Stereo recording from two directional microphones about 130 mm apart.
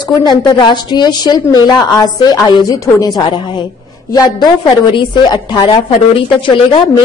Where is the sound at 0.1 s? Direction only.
35° left (ahead or behind).